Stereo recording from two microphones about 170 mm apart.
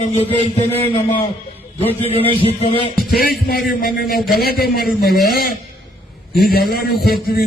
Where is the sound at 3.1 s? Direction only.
65° left (ahead or behind).